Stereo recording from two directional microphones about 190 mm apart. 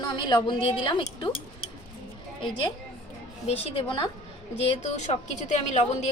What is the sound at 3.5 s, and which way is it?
A woman's voice, 30° left (ahead or behind).